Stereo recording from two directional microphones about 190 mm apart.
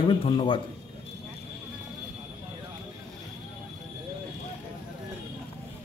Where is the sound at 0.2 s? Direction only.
25° left (ahead or behind).